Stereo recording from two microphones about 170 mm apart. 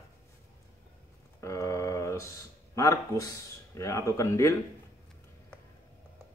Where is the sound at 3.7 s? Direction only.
20° left (ahead or behind).